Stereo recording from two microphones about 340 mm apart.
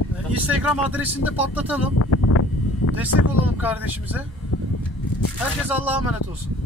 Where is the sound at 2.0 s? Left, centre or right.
Left.